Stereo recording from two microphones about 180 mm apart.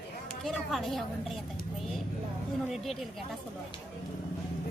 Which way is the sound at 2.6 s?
Centre (ahead or behind).